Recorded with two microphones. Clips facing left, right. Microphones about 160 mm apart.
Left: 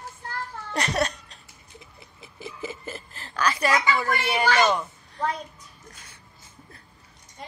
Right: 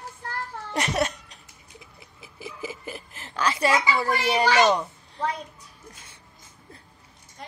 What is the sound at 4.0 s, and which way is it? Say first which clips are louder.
Speech: right 2 dB; 30° right (ahead or behind).